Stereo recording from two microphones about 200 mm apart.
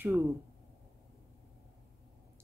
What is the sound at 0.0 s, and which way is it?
Speech, 10° right (ahead or behind).